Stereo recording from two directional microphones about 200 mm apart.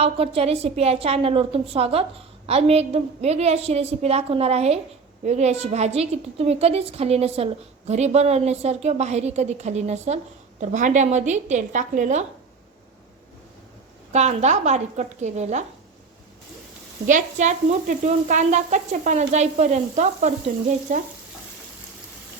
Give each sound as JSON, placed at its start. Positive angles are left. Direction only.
{"t": 0.0, "sound": "a woman's voice", "side_deg": -30}
{"t": 14.1, "sound": "a woman's voice", "side_deg": -35}
{"t": 17.1, "sound": "a woman's voice", "side_deg": -40}